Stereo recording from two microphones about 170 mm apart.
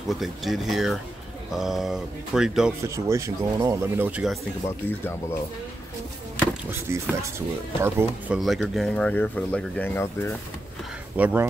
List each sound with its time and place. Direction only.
0.2 s speech: centre (ahead or behind)
2.8 s speech: 15° right (ahead or behind)
4.6 s speech: 15° left (ahead or behind)
6.7 s speech: 15° right (ahead or behind)
8.4 s speech: centre (ahead or behind)
11.1 s speech: 10° right (ahead or behind)